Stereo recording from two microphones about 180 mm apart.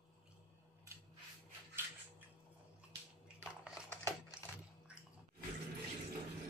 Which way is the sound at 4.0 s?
15° left (ahead or behind).